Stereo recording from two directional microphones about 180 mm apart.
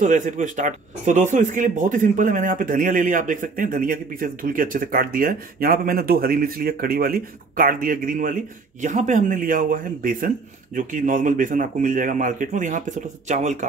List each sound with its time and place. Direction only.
0.0 s speech: 45° right (ahead or behind)